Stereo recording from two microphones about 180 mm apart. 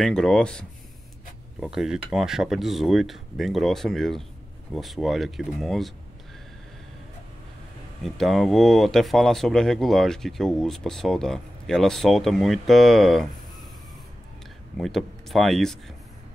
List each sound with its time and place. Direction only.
0.0 s speech: 5° left (ahead or behind)
8.0 s speech: centre (ahead or behind)
14.8 s speech: centre (ahead or behind)